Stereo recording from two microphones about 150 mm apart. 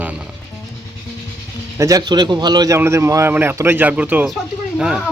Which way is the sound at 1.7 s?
20° right (ahead or behind).